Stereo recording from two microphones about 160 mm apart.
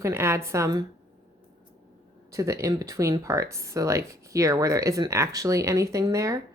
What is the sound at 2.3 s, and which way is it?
Speech, 20° right (ahead or behind).